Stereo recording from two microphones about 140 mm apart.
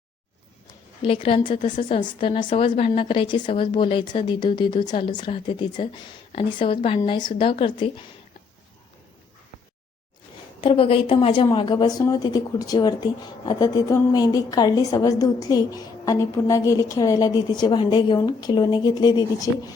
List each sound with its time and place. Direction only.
1.0 s a woman's voice: 40° left (ahead or behind)
10.6 s a woman's voice: 40° left (ahead or behind)